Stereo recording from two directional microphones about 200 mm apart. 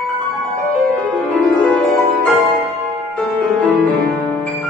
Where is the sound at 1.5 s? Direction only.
Centre (ahead or behind).